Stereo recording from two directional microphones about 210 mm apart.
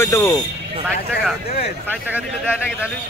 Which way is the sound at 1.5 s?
45° left (ahead or behind).